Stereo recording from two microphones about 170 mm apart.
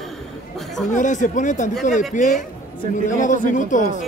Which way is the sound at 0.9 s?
45° left (ahead or behind).